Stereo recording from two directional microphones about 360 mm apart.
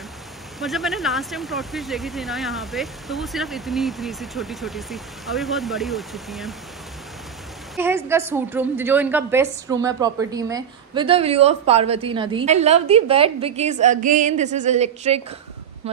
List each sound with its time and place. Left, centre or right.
0.6 s speech: centre
7.7 s a woman's voice: centre